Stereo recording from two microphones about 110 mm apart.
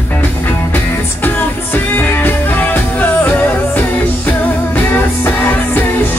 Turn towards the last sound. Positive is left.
turn(degrees=15)  # may be behind; listen again after turning